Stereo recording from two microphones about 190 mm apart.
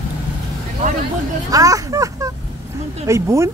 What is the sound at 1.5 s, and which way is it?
Speech, 20° right (ahead or behind).